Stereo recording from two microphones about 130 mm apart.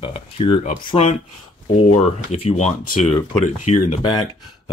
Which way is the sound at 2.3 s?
55° left (ahead or behind).